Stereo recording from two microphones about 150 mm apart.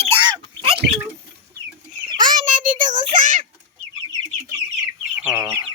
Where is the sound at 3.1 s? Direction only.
60° right (ahead or behind).